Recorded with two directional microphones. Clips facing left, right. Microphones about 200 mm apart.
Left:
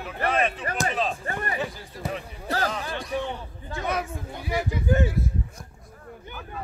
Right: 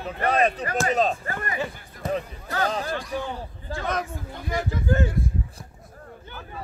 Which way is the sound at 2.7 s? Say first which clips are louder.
Right 4 dB; 40° right (ahead or behind).